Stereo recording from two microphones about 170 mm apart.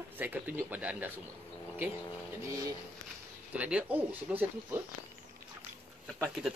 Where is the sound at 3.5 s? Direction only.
10° right (ahead or behind).